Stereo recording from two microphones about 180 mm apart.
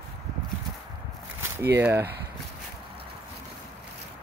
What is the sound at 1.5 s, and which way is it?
Speech, 15° right (ahead or behind).